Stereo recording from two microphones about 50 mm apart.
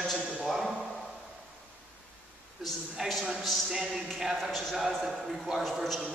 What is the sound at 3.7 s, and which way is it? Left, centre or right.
A man's voice, centre.